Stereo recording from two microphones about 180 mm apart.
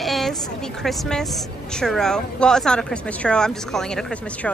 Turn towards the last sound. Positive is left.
turn(degrees=5)  # may be behind; listen again after turning